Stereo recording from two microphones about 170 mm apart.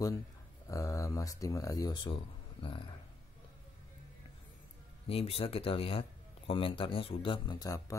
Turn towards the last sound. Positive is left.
turn(degrees=20)  # may be behind; listen again after turning